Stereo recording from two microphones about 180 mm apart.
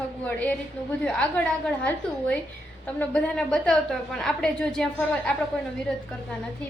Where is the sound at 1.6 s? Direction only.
5° left (ahead or behind).